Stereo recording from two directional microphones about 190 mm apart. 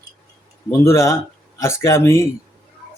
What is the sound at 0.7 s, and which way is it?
Speech, 15° left (ahead or behind).